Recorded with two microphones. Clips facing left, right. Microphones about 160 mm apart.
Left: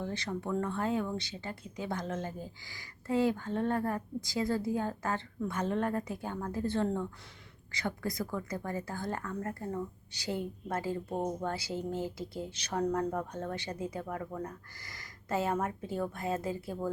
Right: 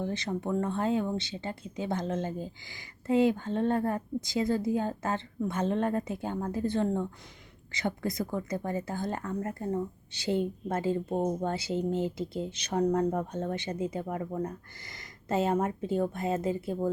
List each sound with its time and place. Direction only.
0.0 s speech: 20° right (ahead or behind)